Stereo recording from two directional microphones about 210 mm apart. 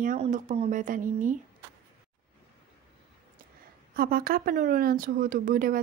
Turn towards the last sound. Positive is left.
turn(degrees=-45)  # may be behind; listen again after turning